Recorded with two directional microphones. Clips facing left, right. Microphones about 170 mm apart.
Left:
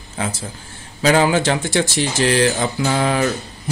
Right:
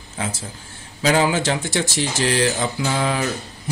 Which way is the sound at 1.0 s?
60° left (ahead or behind).